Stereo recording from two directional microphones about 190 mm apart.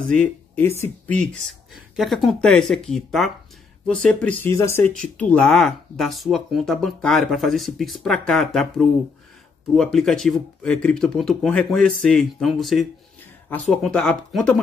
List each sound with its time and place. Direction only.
0.1 s speech: 5° left (ahead or behind)